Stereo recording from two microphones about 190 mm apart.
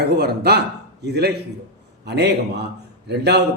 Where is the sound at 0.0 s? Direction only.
60° right (ahead or behind).